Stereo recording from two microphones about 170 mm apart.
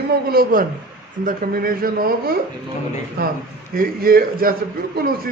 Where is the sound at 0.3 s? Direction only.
60° right (ahead or behind).